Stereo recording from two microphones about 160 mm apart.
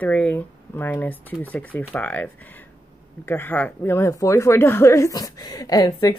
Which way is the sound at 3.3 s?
15° left (ahead or behind).